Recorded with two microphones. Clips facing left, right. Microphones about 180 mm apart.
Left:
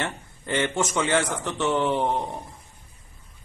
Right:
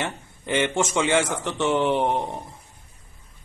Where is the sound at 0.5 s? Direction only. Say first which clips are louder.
Right 2 dB; 15° right (ahead or behind).